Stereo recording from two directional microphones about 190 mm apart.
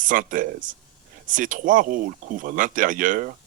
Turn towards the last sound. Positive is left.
turn(degrees=-45)  # may be behind; listen again after turning